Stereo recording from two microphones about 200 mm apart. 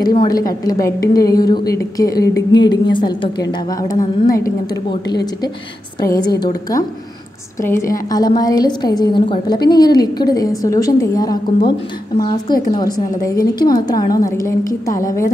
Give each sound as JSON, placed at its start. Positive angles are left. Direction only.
{"t": 0.0, "sound": "a woman's voice", "side_deg": 20}
{"t": 7.6, "sound": "a woman's voice", "side_deg": 15}
{"t": 12.7, "sound": "a woman's voice", "side_deg": 20}